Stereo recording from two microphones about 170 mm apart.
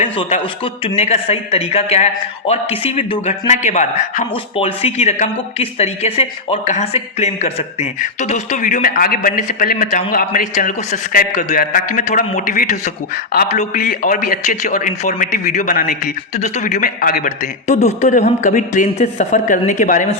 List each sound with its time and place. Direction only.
0.2 s a man's voice: 35° left (ahead or behind)
4.5 s speech: 35° left (ahead or behind); by 17.3 s 55° left (ahead or behind)
17.7 s speech: 40° left (ahead or behind)